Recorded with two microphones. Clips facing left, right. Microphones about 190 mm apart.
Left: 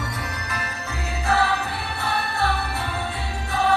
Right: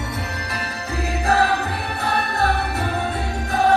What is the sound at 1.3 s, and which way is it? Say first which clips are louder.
Music: right 3 dB; 40° right (ahead or behind).